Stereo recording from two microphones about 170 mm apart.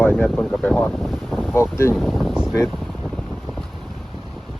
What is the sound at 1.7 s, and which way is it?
Speech, 15° left (ahead or behind).